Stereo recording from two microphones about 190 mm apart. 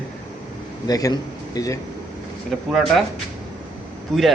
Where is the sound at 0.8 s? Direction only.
20° left (ahead or behind).